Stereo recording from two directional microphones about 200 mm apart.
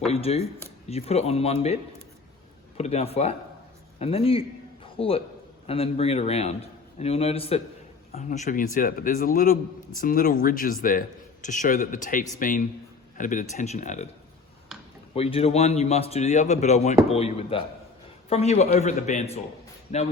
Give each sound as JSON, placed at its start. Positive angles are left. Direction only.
{"t": 0.0, "sound": "a man's voice", "side_deg": 30}
{"t": 15.1, "sound": "a man's voice", "side_deg": 30}